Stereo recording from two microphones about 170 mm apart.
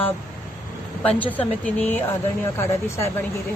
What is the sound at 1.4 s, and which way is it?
Speech, 10° left (ahead or behind).